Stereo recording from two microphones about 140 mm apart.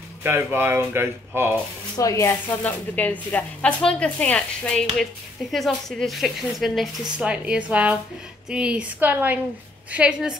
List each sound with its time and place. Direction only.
0.2 s speech: 15° right (ahead or behind)
2.0 s speech: 25° left (ahead or behind)
2.6 s a woman's voice: 10° left (ahead or behind); by 10.3 s 5° right (ahead or behind)